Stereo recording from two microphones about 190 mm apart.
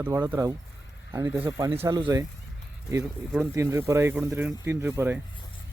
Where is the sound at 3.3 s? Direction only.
10° right (ahead or behind).